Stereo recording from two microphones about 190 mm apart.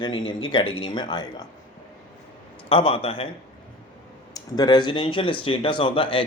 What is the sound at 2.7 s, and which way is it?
Speech, 30° left (ahead or behind).